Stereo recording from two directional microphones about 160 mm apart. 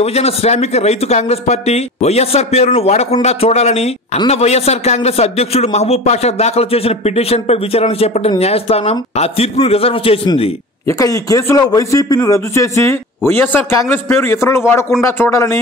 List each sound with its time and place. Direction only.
0.0 s a man's voice: 40° left (ahead or behind)
10.9 s a man's voice: 20° left (ahead or behind)